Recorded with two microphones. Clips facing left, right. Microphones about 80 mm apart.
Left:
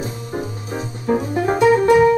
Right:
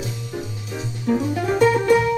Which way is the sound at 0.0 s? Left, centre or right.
Left.